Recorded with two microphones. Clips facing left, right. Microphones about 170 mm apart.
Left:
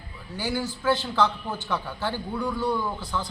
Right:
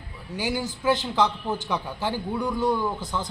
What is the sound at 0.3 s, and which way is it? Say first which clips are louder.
A man's voice: right 1 dB; 20° right (ahead or behind).